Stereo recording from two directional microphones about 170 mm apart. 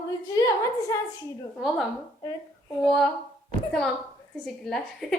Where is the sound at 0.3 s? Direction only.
20° left (ahead or behind).